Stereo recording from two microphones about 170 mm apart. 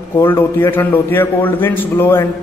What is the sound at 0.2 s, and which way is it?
A man's voice, 10° left (ahead or behind).